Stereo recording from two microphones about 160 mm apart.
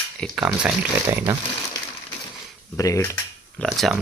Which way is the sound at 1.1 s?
15° right (ahead or behind).